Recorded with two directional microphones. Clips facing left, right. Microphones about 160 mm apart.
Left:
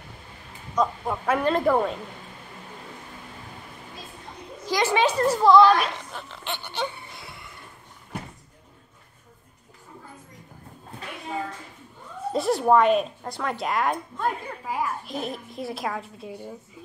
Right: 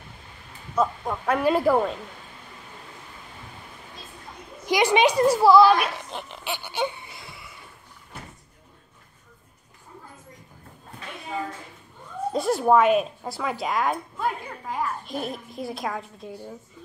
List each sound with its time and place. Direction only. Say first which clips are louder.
0.7 s a child's voice: even; centre (ahead or behind)
4.6 s a child's voice: right 3 dB; 15° right (ahead or behind)
6.0 s a sound: right 3 dB; 20° right (ahead or behind)
6.4 s a child's voice: right 2 dB; 10° right (ahead or behind)
7.2 s a sound: left 1 dB; centre (ahead or behind)
12.3 s speech: even; centre (ahead or behind)